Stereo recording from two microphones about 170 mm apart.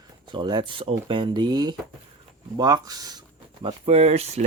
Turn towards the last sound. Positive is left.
turn(degrees=-40)  # may be behind; listen again after turning